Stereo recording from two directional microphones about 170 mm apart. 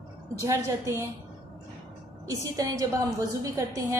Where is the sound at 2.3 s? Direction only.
20° right (ahead or behind).